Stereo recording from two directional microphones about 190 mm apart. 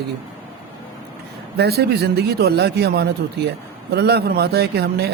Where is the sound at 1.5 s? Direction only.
60° right (ahead or behind).